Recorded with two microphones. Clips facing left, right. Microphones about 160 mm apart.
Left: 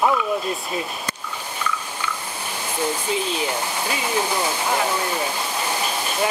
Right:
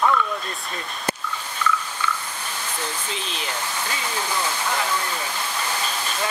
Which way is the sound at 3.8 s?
15° left (ahead or behind).